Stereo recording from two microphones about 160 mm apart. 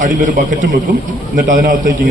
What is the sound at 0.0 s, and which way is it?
A man's voice, 55° right (ahead or behind).